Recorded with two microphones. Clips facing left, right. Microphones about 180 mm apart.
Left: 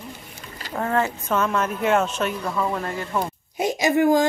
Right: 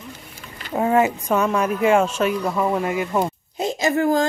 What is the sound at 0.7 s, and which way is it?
Speech, 15° right (ahead or behind).